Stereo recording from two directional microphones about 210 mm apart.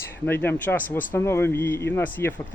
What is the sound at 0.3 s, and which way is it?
Speech, 10° left (ahead or behind).